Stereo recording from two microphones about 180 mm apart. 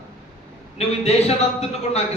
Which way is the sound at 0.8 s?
35° left (ahead or behind).